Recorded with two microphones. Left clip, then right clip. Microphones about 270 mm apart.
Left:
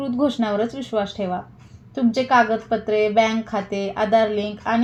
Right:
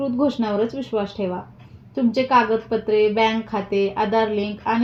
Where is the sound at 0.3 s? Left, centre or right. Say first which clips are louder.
Even; left.